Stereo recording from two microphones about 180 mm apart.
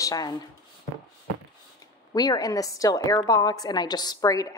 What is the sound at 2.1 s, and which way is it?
A woman's voice, 20° left (ahead or behind).